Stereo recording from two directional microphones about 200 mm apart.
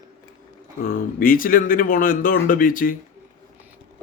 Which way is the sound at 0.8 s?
45° left (ahead or behind).